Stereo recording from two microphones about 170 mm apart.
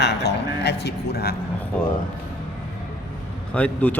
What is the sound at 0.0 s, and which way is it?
Speech, 80° left.